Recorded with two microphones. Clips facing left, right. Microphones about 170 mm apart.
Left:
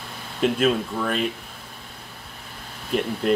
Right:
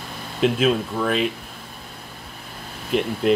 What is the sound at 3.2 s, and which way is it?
Speech, centre (ahead or behind).